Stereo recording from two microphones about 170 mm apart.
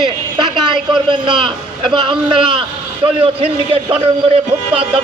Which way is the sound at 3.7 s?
35° right (ahead or behind).